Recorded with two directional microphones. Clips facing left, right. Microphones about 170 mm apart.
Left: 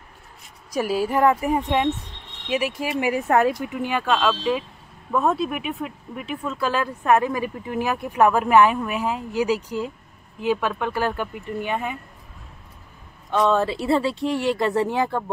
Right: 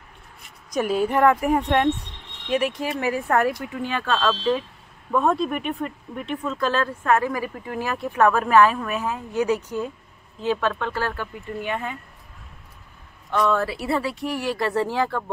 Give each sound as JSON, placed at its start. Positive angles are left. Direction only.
{"t": 0.7, "sound": "speech", "side_deg": 5}
{"t": 10.4, "sound": "speech", "side_deg": 10}
{"t": 13.3, "sound": "speech", "side_deg": 25}